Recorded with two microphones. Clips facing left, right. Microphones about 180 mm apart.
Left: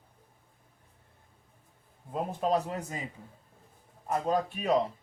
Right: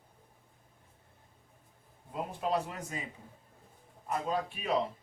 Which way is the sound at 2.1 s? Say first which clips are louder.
Left 4 dB; 40° left (ahead or behind).